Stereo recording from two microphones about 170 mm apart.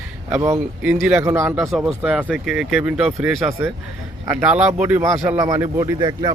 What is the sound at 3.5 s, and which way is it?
Speech, 15° right (ahead or behind).